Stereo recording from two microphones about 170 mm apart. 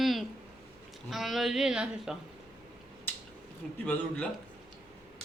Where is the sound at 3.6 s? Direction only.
Centre (ahead or behind).